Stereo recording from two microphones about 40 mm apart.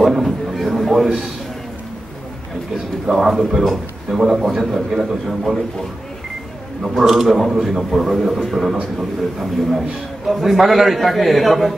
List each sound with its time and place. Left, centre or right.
0.0 s a man's voice: centre
3.1 s a man's voice: centre
7.0 s a man's voice: centre